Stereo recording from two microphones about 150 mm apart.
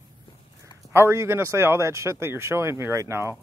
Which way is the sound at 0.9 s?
15° right (ahead or behind).